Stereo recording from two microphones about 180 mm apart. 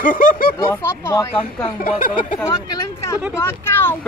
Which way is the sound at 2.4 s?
20° left (ahead or behind).